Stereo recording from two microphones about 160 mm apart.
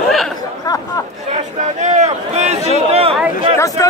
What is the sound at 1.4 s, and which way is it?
Speech, 50° right (ahead or behind).